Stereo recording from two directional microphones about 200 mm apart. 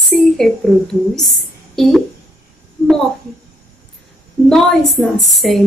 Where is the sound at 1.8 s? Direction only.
Centre (ahead or behind).